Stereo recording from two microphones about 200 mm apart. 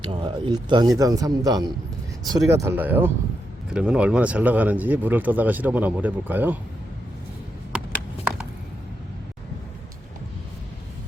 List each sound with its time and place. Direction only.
0.0 s speech: 25° right (ahead or behind); by 6.6 s 10° right (ahead or behind)